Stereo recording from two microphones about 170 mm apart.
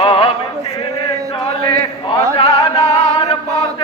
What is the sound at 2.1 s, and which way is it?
Chant, 30° left (ahead or behind).